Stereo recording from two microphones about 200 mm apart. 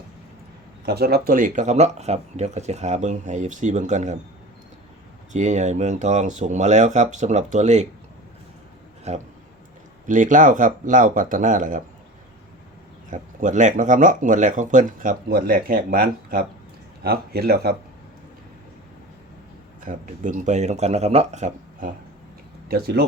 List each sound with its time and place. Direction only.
0.9 s speech: 50° right (ahead or behind)
5.3 s speech: 35° right (ahead or behind)
9.1 s speech: 35° right (ahead or behind)
13.1 s speech: 40° right (ahead or behind)
19.8 s speech: 40° right (ahead or behind)
22.7 s speech: 55° right (ahead or behind)